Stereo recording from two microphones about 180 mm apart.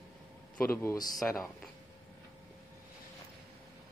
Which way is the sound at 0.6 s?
15° left (ahead or behind).